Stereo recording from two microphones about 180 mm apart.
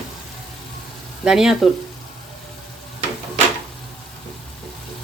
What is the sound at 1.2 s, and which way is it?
Speech, centre (ahead or behind).